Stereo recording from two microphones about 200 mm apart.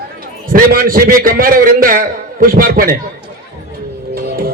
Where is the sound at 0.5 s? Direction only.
45° right (ahead or behind).